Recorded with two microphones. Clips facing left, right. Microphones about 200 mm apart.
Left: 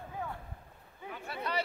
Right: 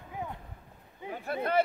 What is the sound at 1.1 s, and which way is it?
Speech, 50° right (ahead or behind).